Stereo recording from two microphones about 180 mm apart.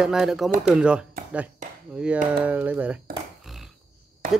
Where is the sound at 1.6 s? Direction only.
45° right (ahead or behind).